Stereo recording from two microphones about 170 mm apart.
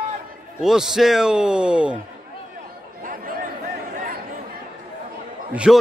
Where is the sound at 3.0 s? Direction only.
55° right (ahead or behind).